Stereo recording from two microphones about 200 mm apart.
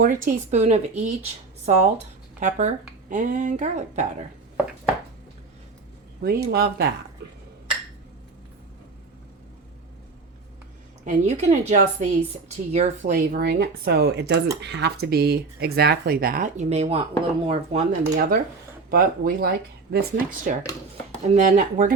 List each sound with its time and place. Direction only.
0.0 s a woman's voice: 40° right (ahead or behind)
6.2 s speech: 50° right (ahead or behind)
11.0 s a woman's voice: 35° right (ahead or behind)
13.1 s a woman's voice: 45° right (ahead or behind)